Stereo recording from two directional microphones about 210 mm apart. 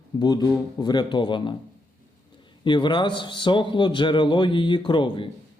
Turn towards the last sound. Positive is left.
turn(degrees=25)  # may be behind; listen again after turning